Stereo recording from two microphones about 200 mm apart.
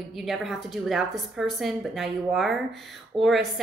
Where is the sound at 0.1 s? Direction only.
Centre (ahead or behind).